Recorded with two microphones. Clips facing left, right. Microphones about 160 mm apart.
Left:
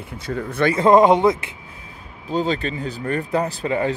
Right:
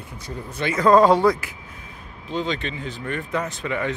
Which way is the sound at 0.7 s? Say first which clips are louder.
Left 1 dB; 20° left (ahead or behind).